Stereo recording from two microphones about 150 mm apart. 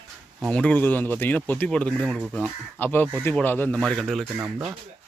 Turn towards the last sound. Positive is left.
turn(degrees=-15)  # may be behind; listen again after turning